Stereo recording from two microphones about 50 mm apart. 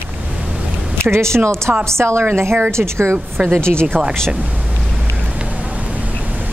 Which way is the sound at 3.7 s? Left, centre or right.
Right.